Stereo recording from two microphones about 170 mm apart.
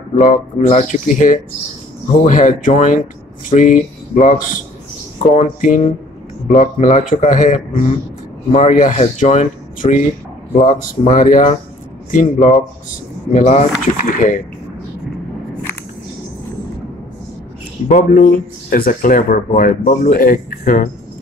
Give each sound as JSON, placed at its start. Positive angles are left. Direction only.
{"t": 0.2, "sound": "speech", "side_deg": 40}
{"t": 17.8, "sound": "speech", "side_deg": 50}